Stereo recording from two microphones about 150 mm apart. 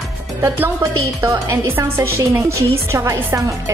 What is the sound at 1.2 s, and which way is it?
Music, 20° right (ahead or behind).